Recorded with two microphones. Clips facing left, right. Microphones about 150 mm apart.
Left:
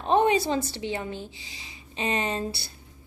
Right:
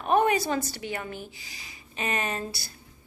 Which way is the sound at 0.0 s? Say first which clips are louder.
Left 1 dB; 20° left (ahead or behind).